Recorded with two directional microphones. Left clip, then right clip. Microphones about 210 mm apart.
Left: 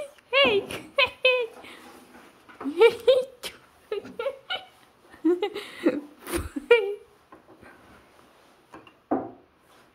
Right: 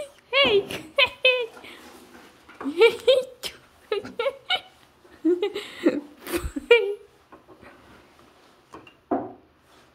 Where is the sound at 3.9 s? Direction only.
25° right (ahead or behind).